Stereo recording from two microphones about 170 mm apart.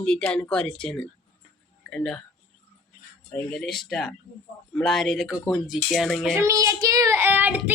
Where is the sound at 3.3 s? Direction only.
5° left (ahead or behind).